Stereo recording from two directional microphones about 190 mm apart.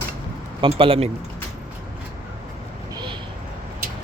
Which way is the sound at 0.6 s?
30° right (ahead or behind).